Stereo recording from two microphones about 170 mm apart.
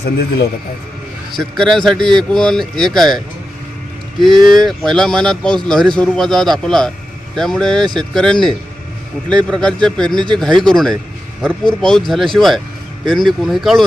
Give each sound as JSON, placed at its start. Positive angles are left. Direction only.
{"t": 0.0, "sound": "a man's voice", "side_deg": 70}
{"t": 1.4, "sound": "speech", "side_deg": 0}
{"t": 4.5, "sound": "speech", "side_deg": 0}